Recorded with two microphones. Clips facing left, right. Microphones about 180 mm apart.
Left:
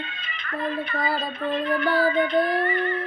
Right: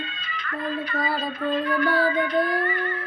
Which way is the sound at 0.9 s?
25° left (ahead or behind).